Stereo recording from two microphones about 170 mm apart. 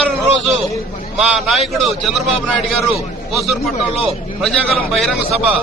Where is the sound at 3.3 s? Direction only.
Centre (ahead or behind).